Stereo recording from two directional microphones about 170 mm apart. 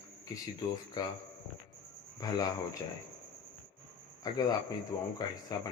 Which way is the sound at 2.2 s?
20° left (ahead or behind).